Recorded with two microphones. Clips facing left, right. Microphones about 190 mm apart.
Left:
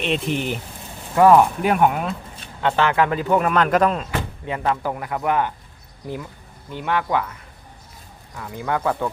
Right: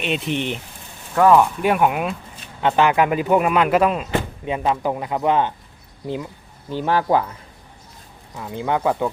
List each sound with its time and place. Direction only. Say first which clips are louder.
0.0 s speech: even; centre (ahead or behind)
1.7 s speech: even; 5° right (ahead or behind)
4.4 s speech: right 1 dB; 20° right (ahead or behind)
6.7 s speech: right 4 dB; 35° right (ahead or behind)
8.4 s speech: right 2 dB; 20° right (ahead or behind)